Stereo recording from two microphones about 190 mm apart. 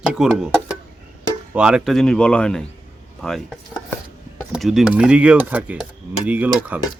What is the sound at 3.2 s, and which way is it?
Chopping, centre (ahead or behind).